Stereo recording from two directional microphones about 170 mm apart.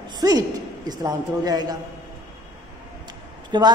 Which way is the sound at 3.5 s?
25° right (ahead or behind).